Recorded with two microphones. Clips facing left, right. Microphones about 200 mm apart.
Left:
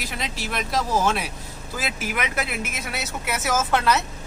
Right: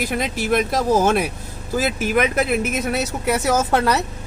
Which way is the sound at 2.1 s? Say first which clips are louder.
Right 11 dB; 35° right (ahead or behind).